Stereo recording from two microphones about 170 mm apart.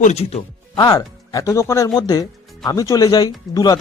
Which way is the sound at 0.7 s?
25° left (ahead or behind).